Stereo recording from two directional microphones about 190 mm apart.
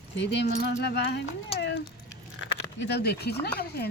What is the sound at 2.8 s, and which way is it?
Speech, 60° left (ahead or behind).